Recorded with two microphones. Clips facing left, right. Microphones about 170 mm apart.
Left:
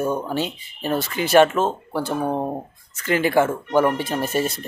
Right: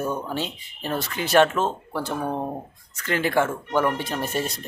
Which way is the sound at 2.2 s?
15° left (ahead or behind).